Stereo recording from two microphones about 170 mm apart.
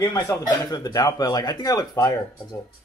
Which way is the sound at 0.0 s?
25° left (ahead or behind).